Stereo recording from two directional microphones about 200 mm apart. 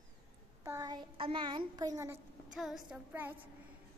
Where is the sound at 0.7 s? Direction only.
15° right (ahead or behind).